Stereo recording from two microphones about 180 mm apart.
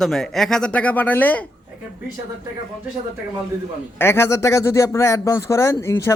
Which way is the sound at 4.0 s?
15° left (ahead or behind).